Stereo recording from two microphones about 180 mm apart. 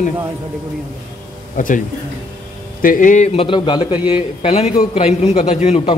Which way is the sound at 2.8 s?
50° left (ahead or behind).